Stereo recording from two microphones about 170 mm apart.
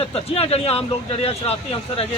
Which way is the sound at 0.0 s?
35° left (ahead or behind).